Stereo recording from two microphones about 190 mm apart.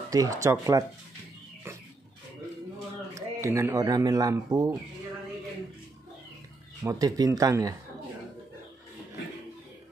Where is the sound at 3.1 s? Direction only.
15° right (ahead or behind).